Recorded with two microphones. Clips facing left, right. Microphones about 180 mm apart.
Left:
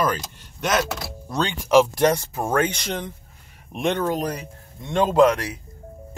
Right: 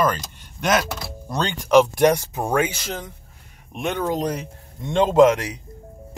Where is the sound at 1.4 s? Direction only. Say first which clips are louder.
Right 1 dB; 5° left (ahead or behind).